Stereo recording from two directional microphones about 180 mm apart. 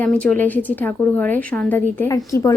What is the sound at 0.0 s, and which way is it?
A woman's voice, 5° left (ahead or behind).